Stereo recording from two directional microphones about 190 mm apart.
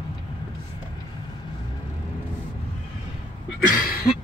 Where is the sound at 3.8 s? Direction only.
50° left (ahead or behind).